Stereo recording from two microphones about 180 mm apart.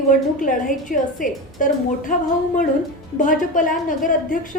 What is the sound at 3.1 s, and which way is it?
A woman's voice, 45° left (ahead or behind).